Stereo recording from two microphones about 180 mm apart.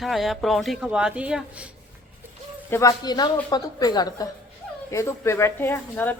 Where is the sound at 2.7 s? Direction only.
20° left (ahead or behind).